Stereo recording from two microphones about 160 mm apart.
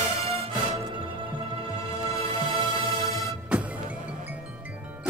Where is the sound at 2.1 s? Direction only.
40° right (ahead or behind).